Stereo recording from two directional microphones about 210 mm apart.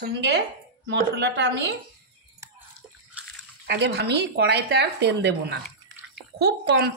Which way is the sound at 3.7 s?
50° right (ahead or behind).